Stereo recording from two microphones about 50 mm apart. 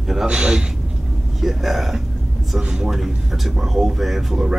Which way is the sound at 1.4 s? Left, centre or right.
Centre.